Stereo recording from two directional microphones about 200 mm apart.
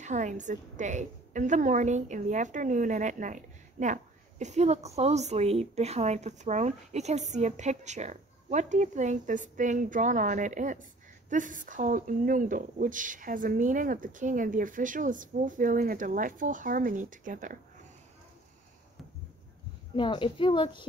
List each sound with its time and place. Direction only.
0.0 s a woman's voice: 35° right (ahead or behind)
20.0 s a woman's voice: 25° left (ahead or behind)